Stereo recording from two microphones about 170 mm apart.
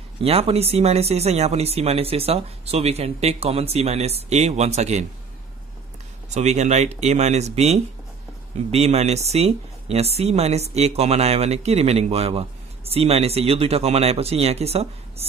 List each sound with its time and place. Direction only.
0.2 s speech: 35° right (ahead or behind)
6.3 s speech: 40° right (ahead or behind)